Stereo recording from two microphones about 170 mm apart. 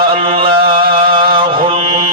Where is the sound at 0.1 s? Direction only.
30° right (ahead or behind).